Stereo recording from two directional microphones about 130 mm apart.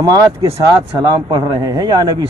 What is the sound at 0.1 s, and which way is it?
Speech, 25° right (ahead or behind).